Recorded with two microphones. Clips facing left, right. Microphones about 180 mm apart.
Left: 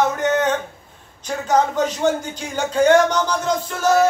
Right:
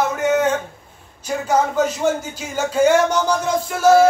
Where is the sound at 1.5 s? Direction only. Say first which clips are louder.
Even; 5° right (ahead or behind).